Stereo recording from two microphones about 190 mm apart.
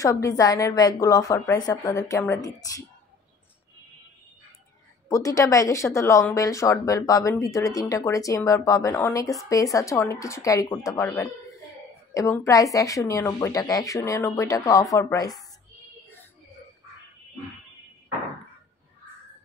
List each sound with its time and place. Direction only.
0.0 s a woman's voice: 15° left (ahead or behind)
5.1 s speech: 15° left (ahead or behind)